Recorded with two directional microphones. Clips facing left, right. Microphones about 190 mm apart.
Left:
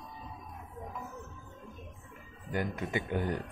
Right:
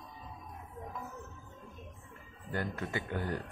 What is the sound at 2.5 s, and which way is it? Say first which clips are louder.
Speech: left 3 dB; 15° left (ahead or behind).